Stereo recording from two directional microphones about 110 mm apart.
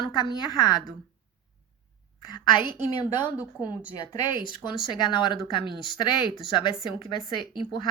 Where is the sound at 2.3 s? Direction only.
45° left (ahead or behind).